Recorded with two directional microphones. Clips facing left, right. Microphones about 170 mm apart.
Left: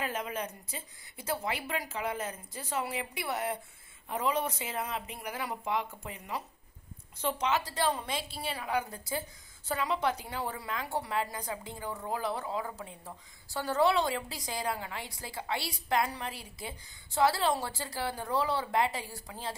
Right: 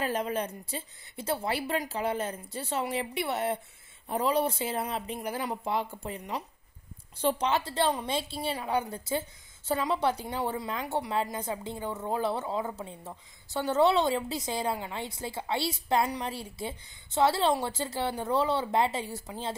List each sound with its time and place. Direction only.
0.0 s a woman's voice: 35° right (ahead or behind)